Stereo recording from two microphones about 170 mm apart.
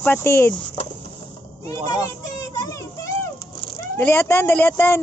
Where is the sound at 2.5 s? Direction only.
20° left (ahead or behind).